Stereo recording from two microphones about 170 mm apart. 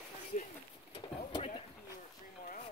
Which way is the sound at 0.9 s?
25° left (ahead or behind).